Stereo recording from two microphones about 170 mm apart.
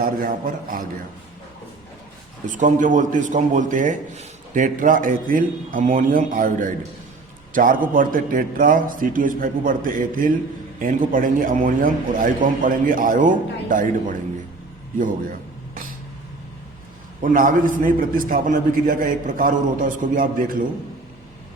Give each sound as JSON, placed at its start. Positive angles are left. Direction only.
{"t": 0.0, "sound": "a man's voice", "side_deg": -55}
{"t": 2.5, "sound": "speech", "side_deg": -50}
{"t": 14.9, "sound": "a sound", "side_deg": -50}
{"t": 17.2, "sound": "speech", "side_deg": -55}